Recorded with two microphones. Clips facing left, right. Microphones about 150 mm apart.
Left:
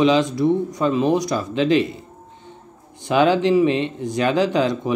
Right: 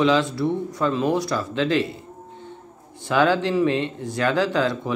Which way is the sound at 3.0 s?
20° left (ahead or behind).